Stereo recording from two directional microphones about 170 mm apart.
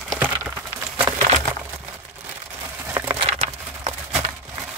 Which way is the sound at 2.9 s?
15° right (ahead or behind).